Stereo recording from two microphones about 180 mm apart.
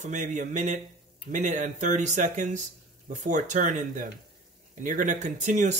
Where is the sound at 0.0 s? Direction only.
45° right (ahead or behind).